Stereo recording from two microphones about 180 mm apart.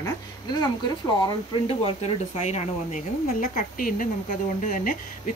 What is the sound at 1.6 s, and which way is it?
A woman's voice, 35° left (ahead or behind).